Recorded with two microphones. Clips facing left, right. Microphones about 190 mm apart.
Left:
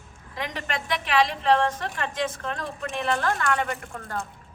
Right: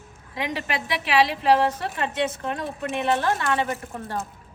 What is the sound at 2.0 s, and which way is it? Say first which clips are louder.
Speech: right 3 dB; 20° right (ahead or behind).